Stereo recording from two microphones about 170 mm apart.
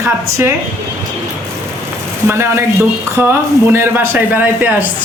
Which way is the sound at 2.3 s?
15° right (ahead or behind).